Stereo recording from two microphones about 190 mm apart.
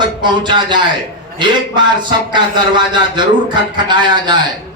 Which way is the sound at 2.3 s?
25° right (ahead or behind).